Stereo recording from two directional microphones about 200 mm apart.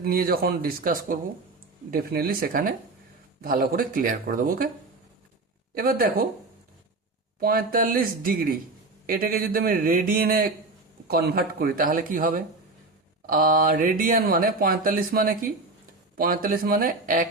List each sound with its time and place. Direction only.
0.0 s speech: 50° right (ahead or behind)
5.7 s speech: 45° right (ahead or behind)
7.3 s speech: 45° right (ahead or behind)